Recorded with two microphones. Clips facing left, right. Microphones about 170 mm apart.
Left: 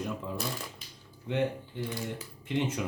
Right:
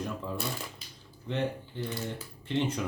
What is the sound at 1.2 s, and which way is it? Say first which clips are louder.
Speech: left 2 dB; 10° left (ahead or behind).